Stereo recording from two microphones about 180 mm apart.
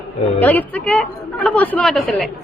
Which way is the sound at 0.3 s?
10° left (ahead or behind).